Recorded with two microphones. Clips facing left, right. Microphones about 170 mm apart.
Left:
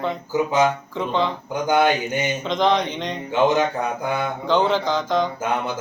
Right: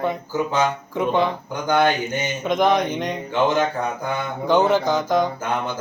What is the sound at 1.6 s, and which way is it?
Mantra, 10° left (ahead or behind).